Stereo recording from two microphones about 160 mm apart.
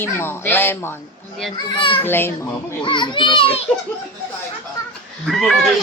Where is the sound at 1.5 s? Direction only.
30° left (ahead or behind).